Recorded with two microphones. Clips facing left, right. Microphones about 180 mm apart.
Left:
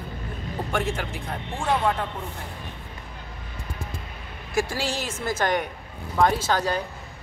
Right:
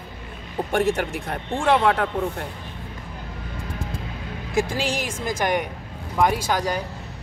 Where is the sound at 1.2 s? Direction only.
50° right (ahead or behind).